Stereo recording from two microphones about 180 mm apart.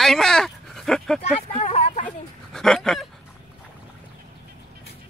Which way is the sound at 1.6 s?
40° left (ahead or behind).